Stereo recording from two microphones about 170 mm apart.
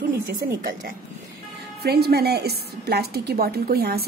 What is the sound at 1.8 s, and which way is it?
A woman's voice, 65° right (ahead or behind).